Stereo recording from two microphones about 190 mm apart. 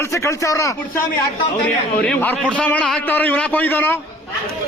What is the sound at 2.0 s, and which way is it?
A man's voice, 5° left (ahead or behind).